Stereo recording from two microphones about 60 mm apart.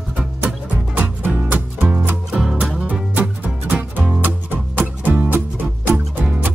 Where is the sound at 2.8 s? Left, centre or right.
Right.